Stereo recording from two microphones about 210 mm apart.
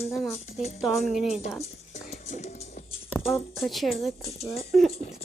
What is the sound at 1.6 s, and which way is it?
Music, 30° left (ahead or behind).